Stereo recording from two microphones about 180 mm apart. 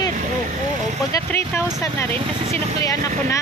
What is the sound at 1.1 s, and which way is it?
Speech, 15° left (ahead or behind).